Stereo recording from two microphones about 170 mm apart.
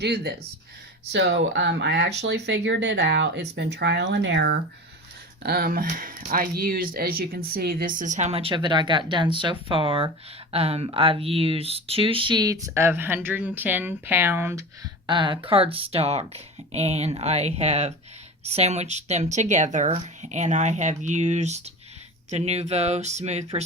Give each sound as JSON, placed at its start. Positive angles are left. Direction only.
{"t": 0.0, "sound": "speech", "side_deg": -75}
{"t": 1.1, "sound": "speech", "side_deg": -90}
{"t": 5.4, "sound": "speech", "side_deg": -65}
{"t": 15.0, "sound": "speech", "side_deg": -30}